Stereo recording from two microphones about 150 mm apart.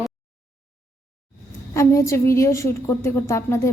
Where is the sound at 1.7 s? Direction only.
20° left (ahead or behind).